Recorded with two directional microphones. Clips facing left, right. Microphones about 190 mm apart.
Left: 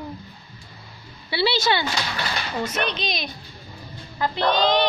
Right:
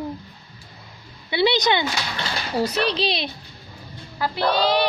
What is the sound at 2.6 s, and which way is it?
Speech, 35° right (ahead or behind).